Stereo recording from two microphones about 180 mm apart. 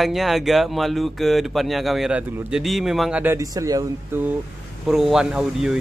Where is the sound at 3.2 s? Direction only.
15° right (ahead or behind).